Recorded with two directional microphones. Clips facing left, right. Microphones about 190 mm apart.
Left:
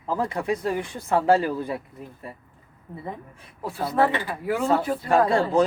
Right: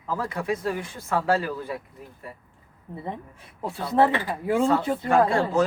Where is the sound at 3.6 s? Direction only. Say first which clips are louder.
Right 1 dB; 25° right (ahead or behind).